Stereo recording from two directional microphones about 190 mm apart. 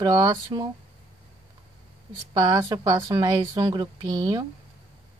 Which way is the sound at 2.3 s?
20° right (ahead or behind).